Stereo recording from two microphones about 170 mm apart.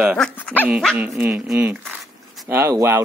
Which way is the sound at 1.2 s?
10° right (ahead or behind).